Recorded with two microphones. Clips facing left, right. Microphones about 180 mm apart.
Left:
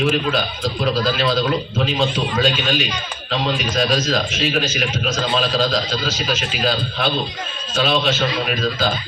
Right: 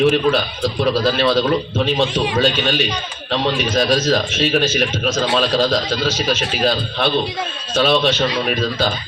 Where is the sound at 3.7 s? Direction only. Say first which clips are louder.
Right 3 dB; 40° right (ahead or behind).